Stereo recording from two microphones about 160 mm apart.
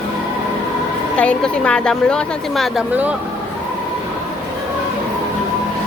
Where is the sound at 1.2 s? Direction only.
5° left (ahead or behind).